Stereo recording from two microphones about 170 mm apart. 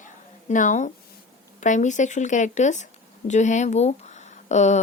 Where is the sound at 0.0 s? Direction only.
50° left (ahead or behind).